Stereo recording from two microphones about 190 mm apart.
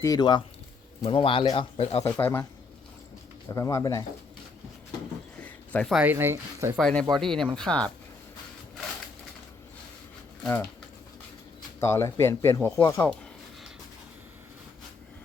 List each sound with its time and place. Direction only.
0.0 s speech: 20° left (ahead or behind)
2.0 s speech: 10° left (ahead or behind)
3.5 s speech: 15° left (ahead or behind)
5.4 s zipper: 5° left (ahead or behind)
6.0 s speech: 10° right (ahead or behind)
6.7 s speech: 5° left (ahead or behind)
11.8 s speech: 15° left (ahead or behind)